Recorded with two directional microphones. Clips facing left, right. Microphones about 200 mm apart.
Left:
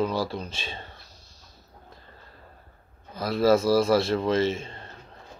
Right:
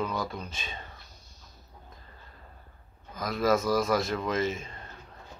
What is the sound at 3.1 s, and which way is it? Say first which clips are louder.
A man's voice: left 5 dB; 30° left (ahead or behind).